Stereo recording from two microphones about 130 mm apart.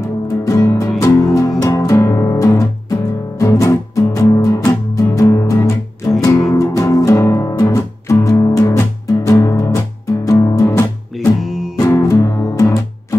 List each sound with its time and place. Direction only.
0.0 s music: 25° left (ahead or behind)
11.3 s music: centre (ahead or behind)
11.9 s music: 25° left (ahead or behind)